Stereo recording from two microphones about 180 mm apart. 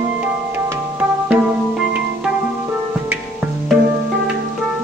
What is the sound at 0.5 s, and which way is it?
Music, 15° right (ahead or behind).